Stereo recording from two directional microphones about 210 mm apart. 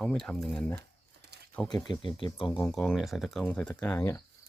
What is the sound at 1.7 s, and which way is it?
Speech, 20° left (ahead or behind).